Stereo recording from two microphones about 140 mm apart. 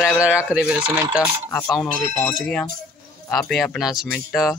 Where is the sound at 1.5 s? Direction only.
5° left (ahead or behind).